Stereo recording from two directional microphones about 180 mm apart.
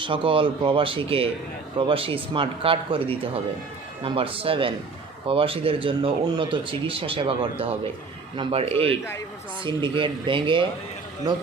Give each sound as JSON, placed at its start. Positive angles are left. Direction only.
{"t": 0.0, "sound": "a man's voice", "side_deg": -30}